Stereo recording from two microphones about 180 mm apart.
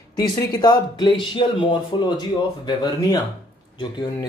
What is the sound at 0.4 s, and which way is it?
Speech, 25° left (ahead or behind).